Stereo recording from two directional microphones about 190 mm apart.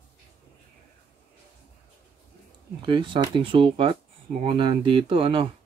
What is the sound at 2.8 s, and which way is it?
Speech, 25° right (ahead or behind).